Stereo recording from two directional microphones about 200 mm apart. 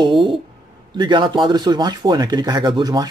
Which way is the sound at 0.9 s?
25° right (ahead or behind).